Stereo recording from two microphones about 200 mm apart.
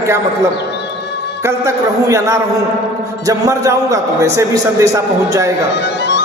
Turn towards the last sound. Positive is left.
turn(degrees=-15)  # may be behind; listen again after turning